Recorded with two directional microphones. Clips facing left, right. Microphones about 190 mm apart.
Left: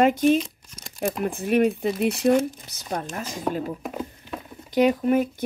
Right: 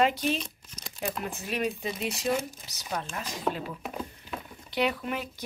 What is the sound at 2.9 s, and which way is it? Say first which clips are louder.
Speech: left 5 dB; 45° left (ahead or behind).